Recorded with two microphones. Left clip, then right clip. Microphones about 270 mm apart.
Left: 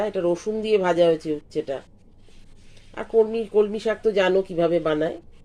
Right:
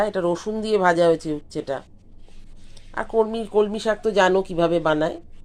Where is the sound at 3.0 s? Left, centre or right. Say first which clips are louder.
Left 1 dB; centre.